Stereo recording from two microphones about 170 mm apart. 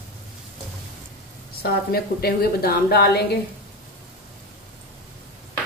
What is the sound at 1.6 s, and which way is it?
A woman's voice, 65° left (ahead or behind).